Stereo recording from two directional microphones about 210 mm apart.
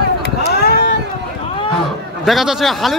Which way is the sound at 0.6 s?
45° left (ahead or behind).